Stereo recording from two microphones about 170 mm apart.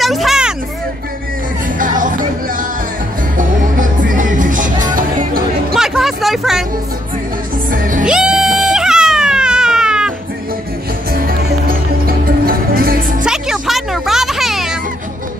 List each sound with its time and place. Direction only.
0.0 s speech: centre (ahead or behind)
1.8 s music: 50° right (ahead or behind)
5.7 s music: centre (ahead or behind)
8.0 s a sound: 5° right (ahead or behind)
11.1 s music: 60° right (ahead or behind)
13.2 s music: 5° right (ahead or behind)